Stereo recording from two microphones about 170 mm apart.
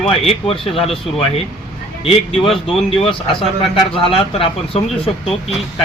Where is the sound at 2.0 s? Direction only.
35° left (ahead or behind).